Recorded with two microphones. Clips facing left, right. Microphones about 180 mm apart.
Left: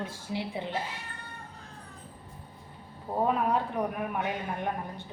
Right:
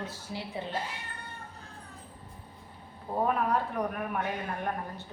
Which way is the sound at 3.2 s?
15° left (ahead or behind).